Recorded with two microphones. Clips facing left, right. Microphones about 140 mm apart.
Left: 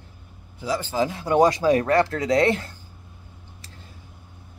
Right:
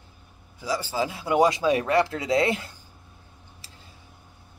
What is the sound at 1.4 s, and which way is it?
Speech, 40° left (ahead or behind).